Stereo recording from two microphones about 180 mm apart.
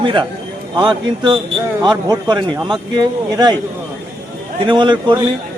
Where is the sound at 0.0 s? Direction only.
25° right (ahead or behind).